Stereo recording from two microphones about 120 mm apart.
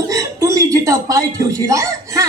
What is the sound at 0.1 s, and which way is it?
Speech, 25° right (ahead or behind).